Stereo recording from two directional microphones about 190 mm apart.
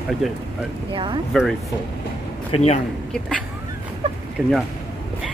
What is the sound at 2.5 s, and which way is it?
Speech, 35° left (ahead or behind).